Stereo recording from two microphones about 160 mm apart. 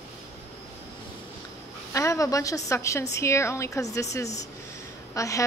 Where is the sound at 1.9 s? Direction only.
20° left (ahead or behind).